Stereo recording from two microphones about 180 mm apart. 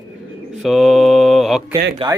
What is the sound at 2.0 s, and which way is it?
Speech, 30° right (ahead or behind).